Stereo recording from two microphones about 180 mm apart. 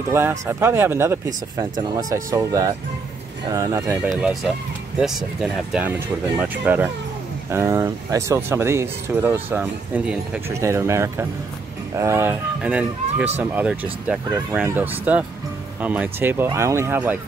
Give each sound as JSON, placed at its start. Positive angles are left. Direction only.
{"t": 0.1, "sound": "speech", "side_deg": -15}
{"t": 4.1, "sound": "speech", "side_deg": 0}
{"t": 10.5, "sound": "speech", "side_deg": -15}